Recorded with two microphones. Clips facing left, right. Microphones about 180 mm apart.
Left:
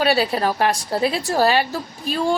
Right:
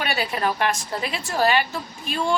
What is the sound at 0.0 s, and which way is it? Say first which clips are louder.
A woman's voice: left 6 dB; 35° left (ahead or behind).